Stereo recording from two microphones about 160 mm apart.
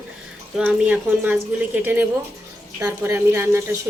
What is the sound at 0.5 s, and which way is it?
Speech, 10° right (ahead or behind).